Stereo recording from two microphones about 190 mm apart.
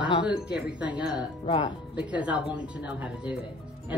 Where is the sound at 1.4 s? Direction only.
30° left (ahead or behind).